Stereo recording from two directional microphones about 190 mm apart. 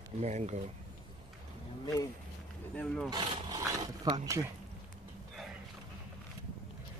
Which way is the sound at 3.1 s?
20° right (ahead or behind).